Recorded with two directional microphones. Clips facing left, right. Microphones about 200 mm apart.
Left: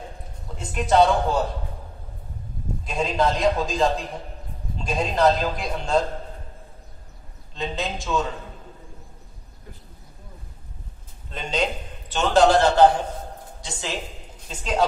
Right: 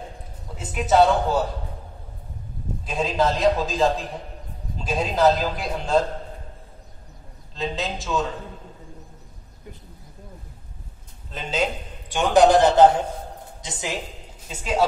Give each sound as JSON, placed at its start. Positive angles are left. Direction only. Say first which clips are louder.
{"t": 0.6, "sound": "a man's voice", "louder": "even", "side_deg": -5}
{"t": 2.8, "sound": "a man's voice", "louder": "even", "side_deg": 0}
{"t": 7.5, "sound": "a man's voice", "louder": "right 1 dB", "side_deg": 0}
{"t": 11.2, "sound": "a man's voice", "louder": "even", "side_deg": 0}
{"t": 14.5, "sound": "speech", "louder": "right 1 dB", "side_deg": -5}